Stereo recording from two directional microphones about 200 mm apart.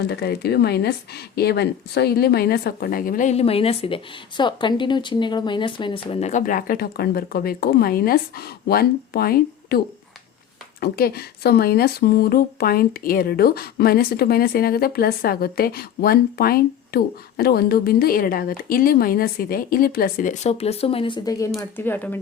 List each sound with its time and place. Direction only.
0.0 s speech: 55° left (ahead or behind); by 22.2 s 10° left (ahead or behind)